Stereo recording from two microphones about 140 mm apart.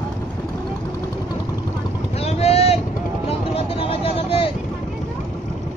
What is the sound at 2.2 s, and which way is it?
Boat, 50° left (ahead or behind).